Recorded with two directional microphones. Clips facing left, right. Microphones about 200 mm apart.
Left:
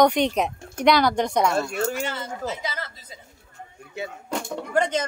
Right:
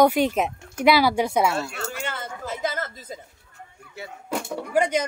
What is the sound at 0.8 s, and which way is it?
Speech, 5° right (ahead or behind).